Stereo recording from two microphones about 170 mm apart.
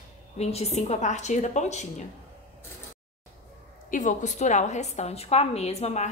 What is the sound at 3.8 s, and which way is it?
A woman's voice, 50° left (ahead or behind).